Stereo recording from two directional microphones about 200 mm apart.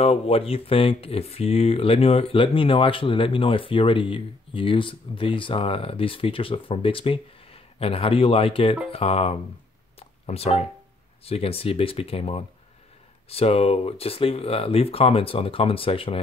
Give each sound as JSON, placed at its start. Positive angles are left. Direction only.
{"t": 0.0, "sound": "speech", "side_deg": 30}
{"t": 9.9, "sound": "a sound", "side_deg": 30}
{"t": 11.2, "sound": "speech", "side_deg": 30}